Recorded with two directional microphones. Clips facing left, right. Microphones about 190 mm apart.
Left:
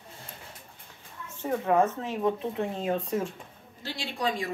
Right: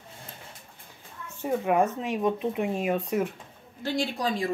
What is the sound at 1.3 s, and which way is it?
Speech, 10° right (ahead or behind).